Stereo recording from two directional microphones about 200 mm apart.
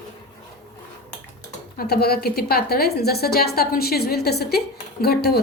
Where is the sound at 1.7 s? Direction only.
50° left (ahead or behind).